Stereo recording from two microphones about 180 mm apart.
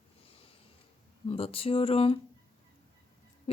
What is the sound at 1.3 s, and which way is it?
Speech, 30° left (ahead or behind).